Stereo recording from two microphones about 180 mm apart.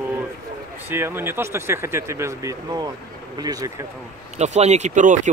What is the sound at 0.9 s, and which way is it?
Speech, 10° right (ahead or behind).